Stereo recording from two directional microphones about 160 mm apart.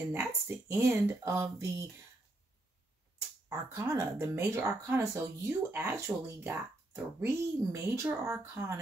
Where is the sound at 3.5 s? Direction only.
15° right (ahead or behind).